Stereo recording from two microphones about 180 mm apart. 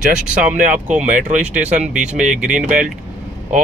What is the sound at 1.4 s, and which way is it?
Speech, 5° right (ahead or behind).